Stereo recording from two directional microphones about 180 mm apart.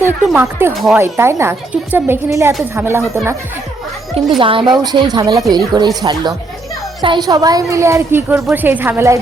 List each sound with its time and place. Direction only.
0.0 s speech: 10° right (ahead or behind)
0.7 s speech: centre (ahead or behind)
0.9 s speech: 15° right (ahead or behind)
4.1 s speech: 30° right (ahead or behind); by 9.1 s 10° right (ahead or behind)